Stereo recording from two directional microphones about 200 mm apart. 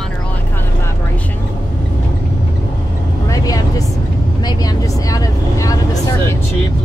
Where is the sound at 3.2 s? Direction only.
15° left (ahead or behind).